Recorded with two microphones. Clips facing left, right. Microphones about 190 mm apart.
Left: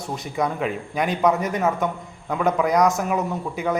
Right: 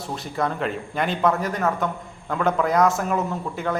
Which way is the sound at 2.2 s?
5° left (ahead or behind).